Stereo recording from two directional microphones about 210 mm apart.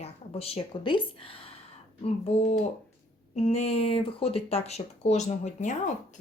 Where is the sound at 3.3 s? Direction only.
30° left (ahead or behind).